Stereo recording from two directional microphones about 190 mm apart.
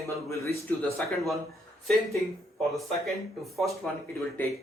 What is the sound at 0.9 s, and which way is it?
Speech, centre (ahead or behind).